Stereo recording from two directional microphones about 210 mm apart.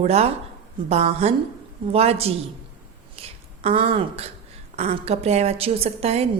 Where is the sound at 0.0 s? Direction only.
30° right (ahead or behind).